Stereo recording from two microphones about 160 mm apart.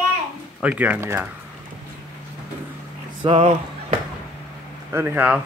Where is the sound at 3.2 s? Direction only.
35° right (ahead or behind).